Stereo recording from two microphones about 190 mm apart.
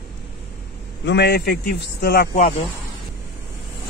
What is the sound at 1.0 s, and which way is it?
A man's voice, 65° left (ahead or behind).